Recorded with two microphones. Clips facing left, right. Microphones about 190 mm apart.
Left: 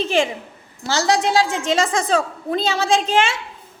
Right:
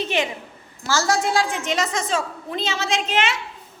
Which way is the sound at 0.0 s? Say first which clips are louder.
Left 5 dB; 30° left (ahead or behind).